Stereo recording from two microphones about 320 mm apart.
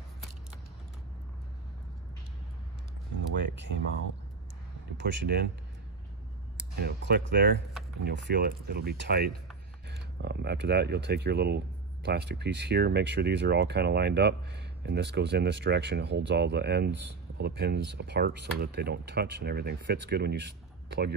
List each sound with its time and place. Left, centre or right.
4.9 s speech: right
6.8 s speech: right